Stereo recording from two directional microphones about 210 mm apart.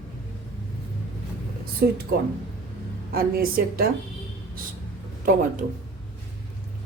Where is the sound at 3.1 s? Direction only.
45° right (ahead or behind).